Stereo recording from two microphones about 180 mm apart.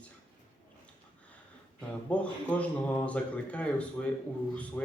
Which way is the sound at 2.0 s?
5° left (ahead or behind).